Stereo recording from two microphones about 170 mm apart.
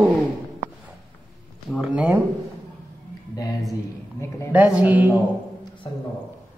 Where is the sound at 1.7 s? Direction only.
5° right (ahead or behind).